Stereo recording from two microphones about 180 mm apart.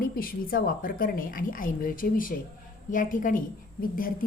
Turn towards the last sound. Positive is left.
turn(degrees=50)  # may be behind; listen again after turning